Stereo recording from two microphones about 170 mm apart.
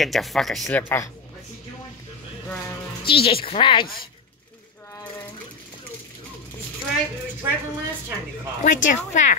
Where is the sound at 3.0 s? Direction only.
35° left (ahead or behind).